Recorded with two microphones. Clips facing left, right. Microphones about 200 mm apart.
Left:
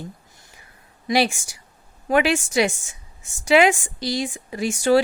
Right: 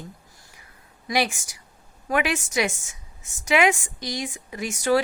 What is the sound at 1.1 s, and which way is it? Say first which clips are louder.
A woman's voice: left 4 dB; 30° left (ahead or behind).